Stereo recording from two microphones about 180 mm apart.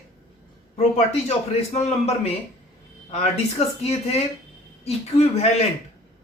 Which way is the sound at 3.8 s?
35° left (ahead or behind).